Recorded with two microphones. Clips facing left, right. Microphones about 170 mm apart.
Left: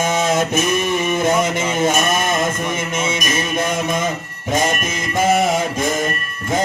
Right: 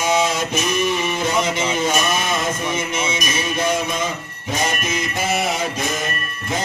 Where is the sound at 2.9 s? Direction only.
50° left (ahead or behind).